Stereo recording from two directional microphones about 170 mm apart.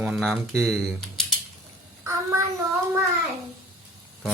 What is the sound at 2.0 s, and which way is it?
Child singing, 15° right (ahead or behind).